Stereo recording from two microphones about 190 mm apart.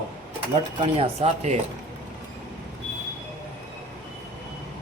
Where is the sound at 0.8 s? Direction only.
30° right (ahead or behind).